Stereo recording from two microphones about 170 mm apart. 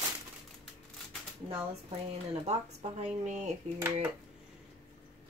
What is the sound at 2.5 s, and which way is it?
A woman's voice, 40° right (ahead or behind).